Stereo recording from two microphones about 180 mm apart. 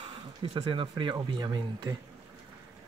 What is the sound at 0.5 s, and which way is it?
Speech, 25° right (ahead or behind).